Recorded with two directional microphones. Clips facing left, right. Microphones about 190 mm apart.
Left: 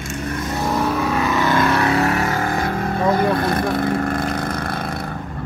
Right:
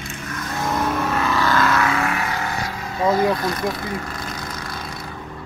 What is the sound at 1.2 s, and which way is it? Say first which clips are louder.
Vehicle: left 2 dB; 20° left (ahead or behind).